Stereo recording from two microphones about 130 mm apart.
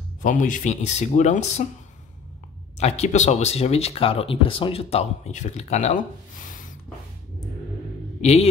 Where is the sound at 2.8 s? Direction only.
60° left (ahead or behind).